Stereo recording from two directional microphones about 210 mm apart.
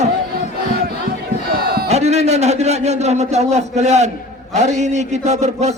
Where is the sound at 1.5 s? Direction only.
45° right (ahead or behind).